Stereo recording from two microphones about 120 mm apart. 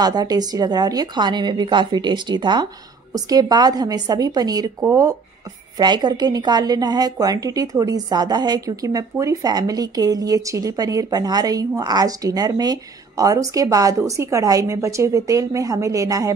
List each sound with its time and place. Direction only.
0.0 s a woman's voice: 35° right (ahead or behind)